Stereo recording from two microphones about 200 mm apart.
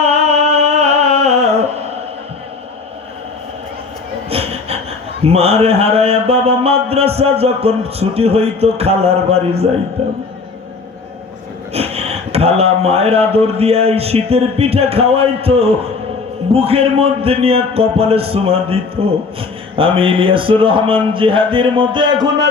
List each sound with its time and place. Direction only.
0.0 s music: 30° right (ahead or behind)
4.3 s speech: 30° right (ahead or behind)
11.7 s speech: 30° right (ahead or behind)